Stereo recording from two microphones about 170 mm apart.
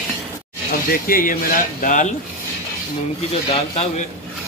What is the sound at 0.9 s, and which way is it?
Speech, 60° left (ahead or behind).